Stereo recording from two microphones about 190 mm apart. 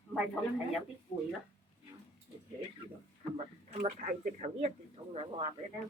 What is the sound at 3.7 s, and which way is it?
Speech, 45° right (ahead or behind).